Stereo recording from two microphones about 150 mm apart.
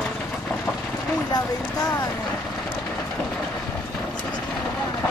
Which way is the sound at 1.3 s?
30° left (ahead or behind).